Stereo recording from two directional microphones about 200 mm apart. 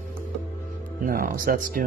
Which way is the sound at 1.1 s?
45° right (ahead or behind).